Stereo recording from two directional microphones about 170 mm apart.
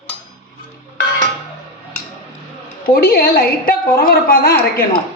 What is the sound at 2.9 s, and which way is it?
A woman's voice, 60° left (ahead or behind).